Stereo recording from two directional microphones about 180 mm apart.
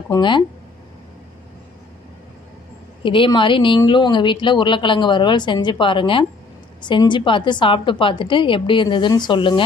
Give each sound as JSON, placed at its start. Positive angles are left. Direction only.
{"t": 0.1, "sound": "speech", "side_deg": 25}
{"t": 3.0, "sound": "speech", "side_deg": 25}